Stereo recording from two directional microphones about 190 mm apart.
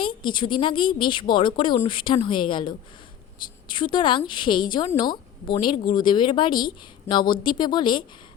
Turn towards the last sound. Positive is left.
turn(degrees=25)  # may be behind; listen again after turning